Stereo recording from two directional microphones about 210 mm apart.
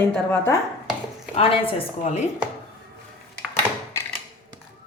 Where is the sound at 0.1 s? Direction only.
10° left (ahead or behind).